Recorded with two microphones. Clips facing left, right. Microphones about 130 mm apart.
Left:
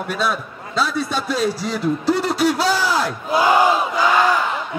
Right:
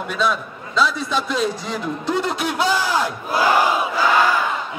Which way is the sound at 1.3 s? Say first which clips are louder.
Left 1 dB; 35° left (ahead or behind).